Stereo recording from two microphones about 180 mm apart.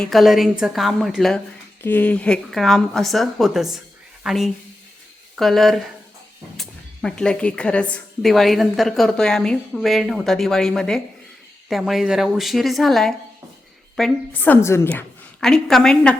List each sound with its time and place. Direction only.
0.0 s speech: centre (ahead or behind)